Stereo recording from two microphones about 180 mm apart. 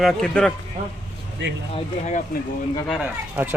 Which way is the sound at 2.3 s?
55° left (ahead or behind).